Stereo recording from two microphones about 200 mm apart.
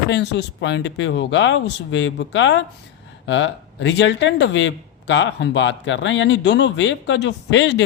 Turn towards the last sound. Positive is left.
turn(degrees=65)  # may be behind; listen again after turning